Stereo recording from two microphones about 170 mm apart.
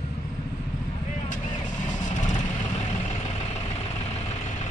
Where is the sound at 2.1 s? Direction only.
45° left (ahead or behind).